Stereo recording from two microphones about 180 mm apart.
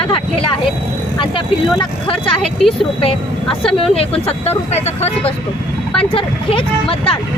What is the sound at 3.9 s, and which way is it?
Speech, 35° left (ahead or behind).